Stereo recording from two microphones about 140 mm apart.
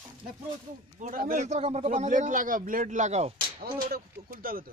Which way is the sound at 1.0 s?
75° right (ahead or behind).